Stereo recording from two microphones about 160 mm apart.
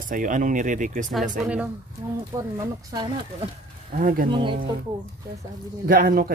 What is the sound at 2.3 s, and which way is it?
Speech, 20° right (ahead or behind).